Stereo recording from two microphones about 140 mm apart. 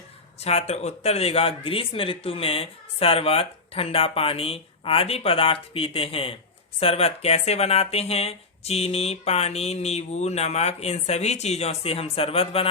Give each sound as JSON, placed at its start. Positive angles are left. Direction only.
{"t": 0.3, "sound": "speech", "side_deg": 50}